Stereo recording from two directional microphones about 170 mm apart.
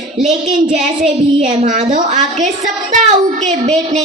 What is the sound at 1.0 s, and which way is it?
A woman's voice, 45° right (ahead or behind).